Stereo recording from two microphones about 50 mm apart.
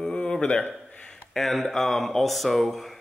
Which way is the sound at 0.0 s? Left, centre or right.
Centre.